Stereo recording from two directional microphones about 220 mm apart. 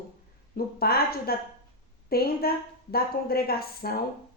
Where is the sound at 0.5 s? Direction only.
45° left (ahead or behind).